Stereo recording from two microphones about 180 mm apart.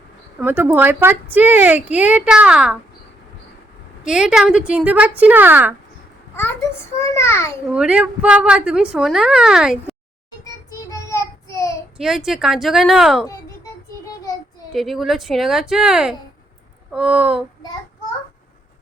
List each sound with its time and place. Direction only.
0.3 s speech: 10° right (ahead or behind)
4.0 s speech: 5° right (ahead or behind)
6.3 s a child's voice: 10° left (ahead or behind)
7.7 s a woman's voice: 5° right (ahead or behind)
10.4 s child singing: 20° left (ahead or behind)
11.9 s a woman's voice: 5° right (ahead or behind)
14.7 s a woman's voice: centre (ahead or behind)